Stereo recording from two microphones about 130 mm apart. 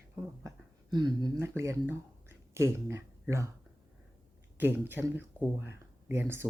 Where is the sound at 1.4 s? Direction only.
20° right (ahead or behind).